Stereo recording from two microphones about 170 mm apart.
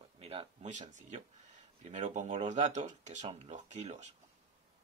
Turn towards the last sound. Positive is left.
turn(degrees=-40)  # may be behind; listen again after turning